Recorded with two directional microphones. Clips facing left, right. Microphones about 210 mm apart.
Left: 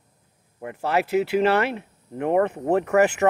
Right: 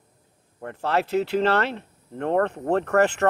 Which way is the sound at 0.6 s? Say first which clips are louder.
Left 1 dB; 10° left (ahead or behind).